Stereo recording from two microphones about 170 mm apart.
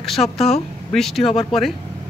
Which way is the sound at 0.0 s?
Centre (ahead or behind).